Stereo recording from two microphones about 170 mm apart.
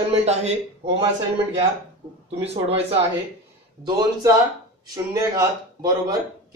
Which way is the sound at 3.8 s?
25° right (ahead or behind).